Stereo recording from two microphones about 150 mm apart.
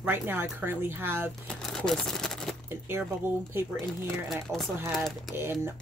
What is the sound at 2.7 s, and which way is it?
Speech, 15° right (ahead or behind).